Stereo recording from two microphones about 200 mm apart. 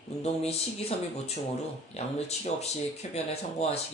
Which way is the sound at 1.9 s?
30° left (ahead or behind).